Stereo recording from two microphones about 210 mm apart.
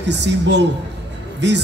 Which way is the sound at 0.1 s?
55° right (ahead or behind).